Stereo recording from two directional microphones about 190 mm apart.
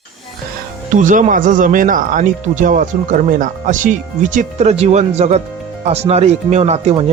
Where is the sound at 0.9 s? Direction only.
40° right (ahead or behind).